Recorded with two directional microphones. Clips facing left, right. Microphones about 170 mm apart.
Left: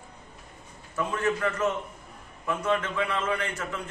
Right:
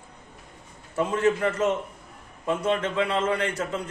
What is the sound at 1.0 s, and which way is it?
A man's voice, 25° right (ahead or behind).